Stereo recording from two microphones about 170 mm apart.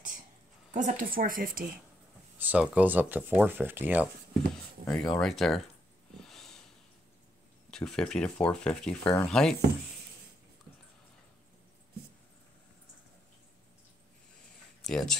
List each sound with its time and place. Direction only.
0.7 s a woman's voice: 50° right (ahead or behind)
2.3 s speech: 10° right (ahead or behind)
4.8 s speech: 5° left (ahead or behind)
6.2 s snort: centre (ahead or behind)
7.7 s speech: 5° left (ahead or behind)
14.8 s speech: centre (ahead or behind)